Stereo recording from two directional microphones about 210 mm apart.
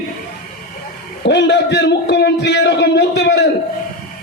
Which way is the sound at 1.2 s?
55° left (ahead or behind).